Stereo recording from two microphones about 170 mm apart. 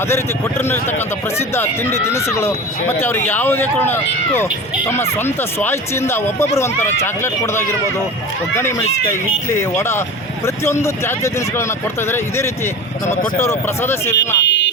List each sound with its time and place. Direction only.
0.6 s speech: 15° left (ahead or behind)
9.6 s speech: 15° left (ahead or behind)
14.4 s speech: 90° left